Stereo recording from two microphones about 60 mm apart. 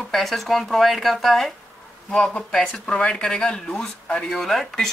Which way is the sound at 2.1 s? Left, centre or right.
Centre.